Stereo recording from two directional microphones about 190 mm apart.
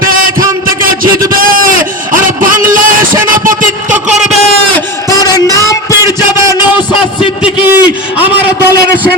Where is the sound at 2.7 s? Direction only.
45° right (ahead or behind).